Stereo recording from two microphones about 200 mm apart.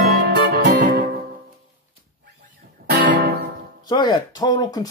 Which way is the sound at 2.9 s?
50° right (ahead or behind).